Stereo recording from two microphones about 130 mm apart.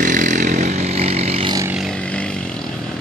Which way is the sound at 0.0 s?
80° right.